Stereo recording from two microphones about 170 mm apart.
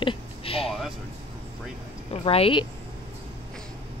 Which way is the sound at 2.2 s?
35° left (ahead or behind).